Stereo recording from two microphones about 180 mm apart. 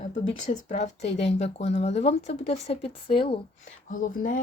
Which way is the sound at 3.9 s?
45° left (ahead or behind).